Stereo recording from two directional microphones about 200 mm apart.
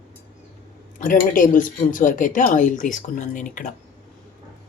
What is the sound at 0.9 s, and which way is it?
A woman's voice, 40° left (ahead or behind).